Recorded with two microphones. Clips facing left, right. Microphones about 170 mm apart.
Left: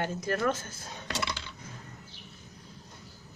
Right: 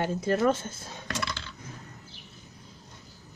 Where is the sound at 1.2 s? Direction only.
15° left (ahead or behind).